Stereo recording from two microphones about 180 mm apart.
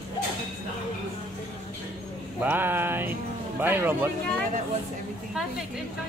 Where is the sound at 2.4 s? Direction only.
10° right (ahead or behind).